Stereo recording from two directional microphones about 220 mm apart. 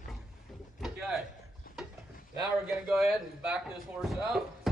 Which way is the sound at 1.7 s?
40° left (ahead or behind).